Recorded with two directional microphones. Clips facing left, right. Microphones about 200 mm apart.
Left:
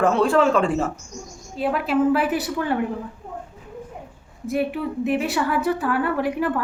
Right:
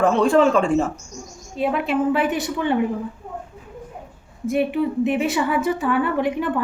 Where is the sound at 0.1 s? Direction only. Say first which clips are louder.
Right 2 dB; 5° left (ahead or behind).